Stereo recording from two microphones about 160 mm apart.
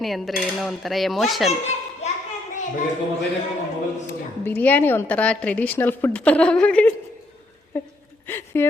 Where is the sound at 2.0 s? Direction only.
45° left (ahead or behind).